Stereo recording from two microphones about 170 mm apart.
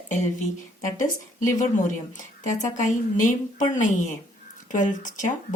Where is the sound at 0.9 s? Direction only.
50° left (ahead or behind).